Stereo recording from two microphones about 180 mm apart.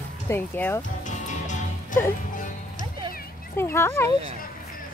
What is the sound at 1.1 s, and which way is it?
Music, 45° left (ahead or behind).